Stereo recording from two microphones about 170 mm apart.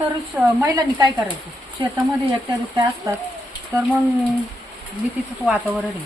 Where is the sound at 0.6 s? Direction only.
20° right (ahead or behind).